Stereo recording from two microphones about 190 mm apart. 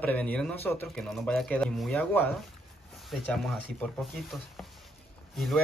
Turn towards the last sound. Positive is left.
turn(degrees=0)  # may be behind; listen again after turning